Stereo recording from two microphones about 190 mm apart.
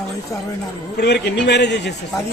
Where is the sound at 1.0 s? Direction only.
60° left (ahead or behind).